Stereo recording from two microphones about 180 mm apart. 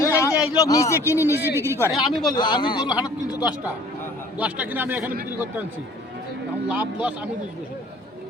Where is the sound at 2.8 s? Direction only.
5° right (ahead or behind).